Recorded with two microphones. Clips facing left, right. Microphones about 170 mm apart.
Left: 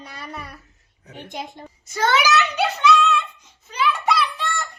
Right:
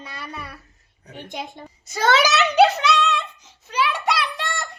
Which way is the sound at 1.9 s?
75° right (ahead or behind).